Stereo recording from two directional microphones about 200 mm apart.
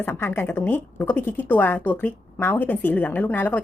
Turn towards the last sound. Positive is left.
turn(degrees=10)  # may be behind; listen again after turning